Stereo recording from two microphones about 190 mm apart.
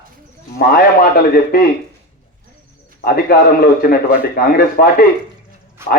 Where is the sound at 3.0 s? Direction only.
50° left (ahead or behind).